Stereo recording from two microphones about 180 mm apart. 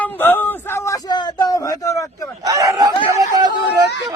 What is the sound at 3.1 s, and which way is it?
Chatter, 20° right (ahead or behind).